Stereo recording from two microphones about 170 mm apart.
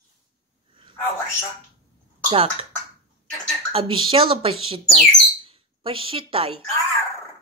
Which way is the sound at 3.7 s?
30° right (ahead or behind).